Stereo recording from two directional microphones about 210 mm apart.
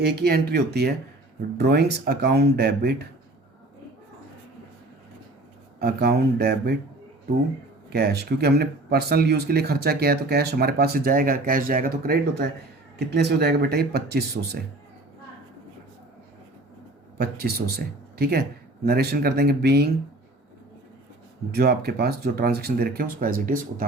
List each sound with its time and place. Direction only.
0.0 s speech: 50° right (ahead or behind)
5.8 s speech: 50° right (ahead or behind)
7.9 s speech: 50° right (ahead or behind)
17.2 s speech: 45° right (ahead or behind)
21.5 s speech: 50° right (ahead or behind)